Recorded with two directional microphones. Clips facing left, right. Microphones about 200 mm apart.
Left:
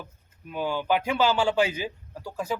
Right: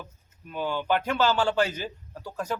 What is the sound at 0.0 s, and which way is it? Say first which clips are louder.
A man's voice: left 1 dB; 10° left (ahead or behind).